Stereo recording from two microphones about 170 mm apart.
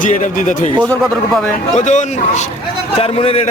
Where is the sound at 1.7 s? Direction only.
45° left (ahead or behind).